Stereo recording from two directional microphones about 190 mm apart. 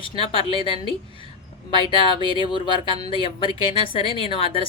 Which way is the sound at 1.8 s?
25° left (ahead or behind).